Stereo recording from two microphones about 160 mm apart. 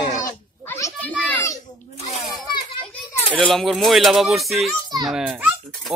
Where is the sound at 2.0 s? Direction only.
40° left (ahead or behind).